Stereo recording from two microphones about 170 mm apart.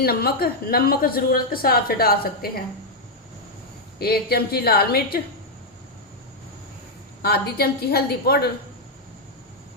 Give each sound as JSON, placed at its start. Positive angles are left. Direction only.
{"t": 0.0, "sound": "a woman's voice", "side_deg": 65}
{"t": 3.9, "sound": "a woman's voice", "side_deg": 65}
{"t": 7.2, "sound": "a woman's voice", "side_deg": 70}